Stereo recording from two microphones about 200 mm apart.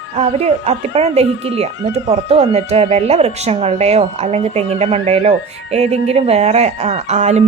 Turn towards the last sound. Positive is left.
turn(degrees=-35)  # may be behind; listen again after turning